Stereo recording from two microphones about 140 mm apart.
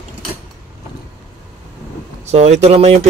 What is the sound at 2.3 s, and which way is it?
Speech, 50° right (ahead or behind).